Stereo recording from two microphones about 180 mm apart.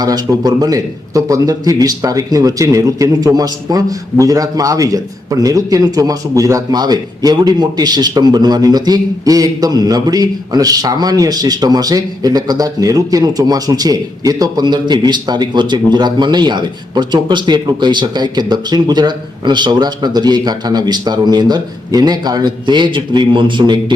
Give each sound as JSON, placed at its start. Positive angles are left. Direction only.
{"t": 0.0, "sound": "a man's voice", "side_deg": -20}